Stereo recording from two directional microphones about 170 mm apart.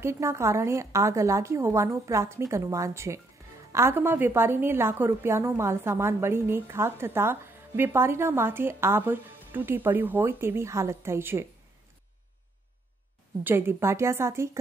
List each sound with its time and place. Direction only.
0.0 s a woman's voice: 15° right (ahead or behind)
13.4 s a woman's voice: 10° right (ahead or behind)